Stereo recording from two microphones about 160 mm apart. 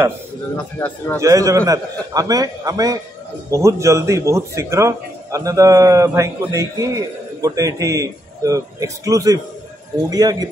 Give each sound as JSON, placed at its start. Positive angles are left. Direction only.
{"t": 0.6, "sound": "speech", "side_deg": 10}
{"t": 1.2, "sound": "a man's voice", "side_deg": -20}